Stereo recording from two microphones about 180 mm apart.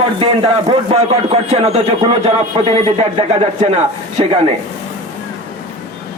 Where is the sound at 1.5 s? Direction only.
35° right (ahead or behind).